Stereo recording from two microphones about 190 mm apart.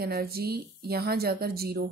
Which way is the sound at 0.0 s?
55° right (ahead or behind).